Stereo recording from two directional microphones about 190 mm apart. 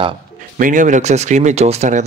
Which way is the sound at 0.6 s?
45° right (ahead or behind).